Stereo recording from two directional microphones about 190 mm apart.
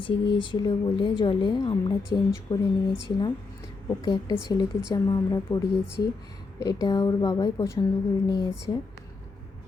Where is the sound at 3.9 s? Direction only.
20° left (ahead or behind).